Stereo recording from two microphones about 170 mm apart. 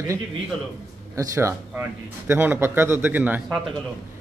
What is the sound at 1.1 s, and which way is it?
Speech, 15° right (ahead or behind).